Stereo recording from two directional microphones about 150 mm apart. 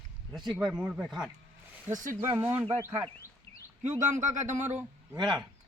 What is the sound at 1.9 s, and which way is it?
Speech, 60° right (ahead or behind).